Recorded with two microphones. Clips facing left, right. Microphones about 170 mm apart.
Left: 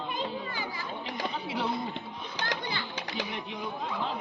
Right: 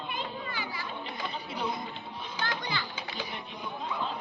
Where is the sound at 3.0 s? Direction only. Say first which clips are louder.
Left 3 dB; 85° left.